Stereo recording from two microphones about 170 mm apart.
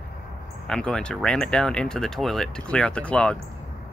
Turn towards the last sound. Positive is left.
turn(degrees=5)  # may be behind; listen again after turning